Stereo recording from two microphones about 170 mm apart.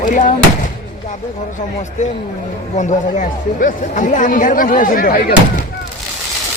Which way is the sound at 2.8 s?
50° left (ahead or behind).